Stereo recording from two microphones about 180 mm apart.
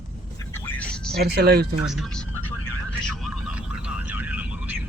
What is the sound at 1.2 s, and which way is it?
Speech, 60° right (ahead or behind).